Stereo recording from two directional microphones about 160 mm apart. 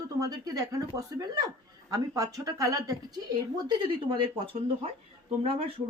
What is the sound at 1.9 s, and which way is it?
Speech, 20° right (ahead or behind).